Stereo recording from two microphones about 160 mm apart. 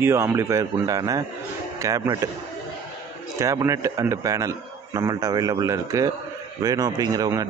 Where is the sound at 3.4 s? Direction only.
20° right (ahead or behind).